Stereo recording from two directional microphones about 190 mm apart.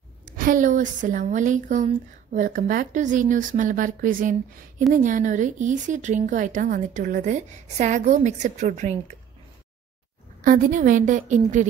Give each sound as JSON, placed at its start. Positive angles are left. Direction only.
{"t": 0.4, "sound": "a woman's voice", "side_deg": -45}
{"t": 10.4, "sound": "a woman's voice", "side_deg": -45}